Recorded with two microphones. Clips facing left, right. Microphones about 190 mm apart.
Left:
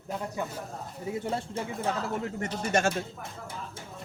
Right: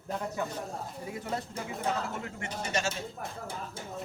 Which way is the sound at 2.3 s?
45° left (ahead or behind).